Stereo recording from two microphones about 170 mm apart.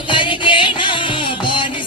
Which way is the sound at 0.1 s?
30° left (ahead or behind).